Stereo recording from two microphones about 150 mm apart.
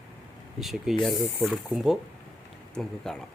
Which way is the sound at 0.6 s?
Centre (ahead or behind).